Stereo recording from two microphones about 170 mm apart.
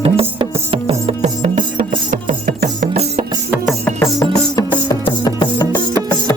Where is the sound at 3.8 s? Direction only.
15° left (ahead or behind).